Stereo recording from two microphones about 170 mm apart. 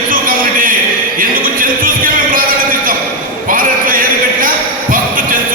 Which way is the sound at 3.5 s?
55° right (ahead or behind).